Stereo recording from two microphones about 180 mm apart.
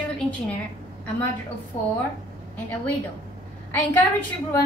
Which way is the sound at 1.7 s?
20° left (ahead or behind).